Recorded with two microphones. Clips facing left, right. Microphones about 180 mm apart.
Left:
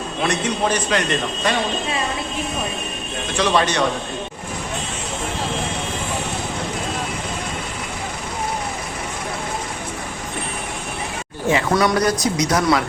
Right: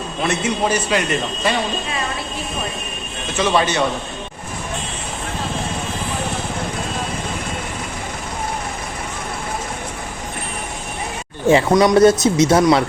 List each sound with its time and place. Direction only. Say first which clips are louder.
0.2 s a man's voice: right 1 dB; 5° right (ahead or behind)
3.3 s a man's voice: right 1 dB; centre (ahead or behind)
11.7 s speech: right 7 dB; 20° right (ahead or behind)